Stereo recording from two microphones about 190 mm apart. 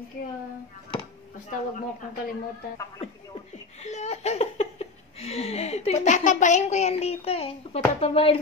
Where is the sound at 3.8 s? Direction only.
35° left (ahead or behind).